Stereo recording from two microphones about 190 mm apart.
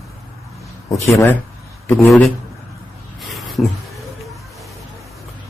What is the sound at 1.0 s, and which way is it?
Speech, 15° left (ahead or behind).